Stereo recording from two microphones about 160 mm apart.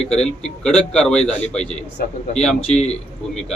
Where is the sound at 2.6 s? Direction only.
40° left (ahead or behind).